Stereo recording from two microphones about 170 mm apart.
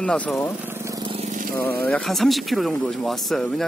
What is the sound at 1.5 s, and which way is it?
Speech, 10° left (ahead or behind).